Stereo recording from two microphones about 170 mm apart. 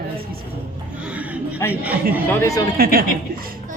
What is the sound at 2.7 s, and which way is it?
Speech, 60° right (ahead or behind).